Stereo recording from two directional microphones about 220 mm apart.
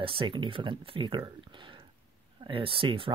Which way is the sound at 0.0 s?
25° right (ahead or behind).